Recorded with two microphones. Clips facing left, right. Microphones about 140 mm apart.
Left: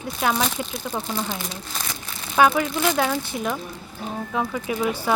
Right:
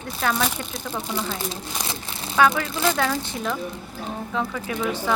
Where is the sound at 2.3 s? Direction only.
20° left (ahead or behind).